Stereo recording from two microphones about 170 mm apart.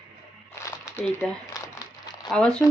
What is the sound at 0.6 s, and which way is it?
Crumpling, 15° left (ahead or behind).